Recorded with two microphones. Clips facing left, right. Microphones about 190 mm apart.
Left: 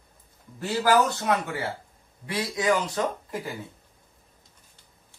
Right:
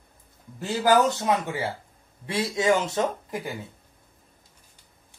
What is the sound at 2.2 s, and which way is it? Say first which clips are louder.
Speech: right 2 dB; 25° right (ahead or behind).